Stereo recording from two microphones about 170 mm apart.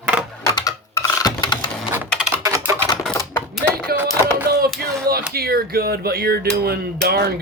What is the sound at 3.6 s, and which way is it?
Typing, 70° right (ahead or behind).